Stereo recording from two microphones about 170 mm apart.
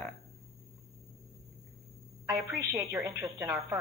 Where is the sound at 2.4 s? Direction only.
10° right (ahead or behind).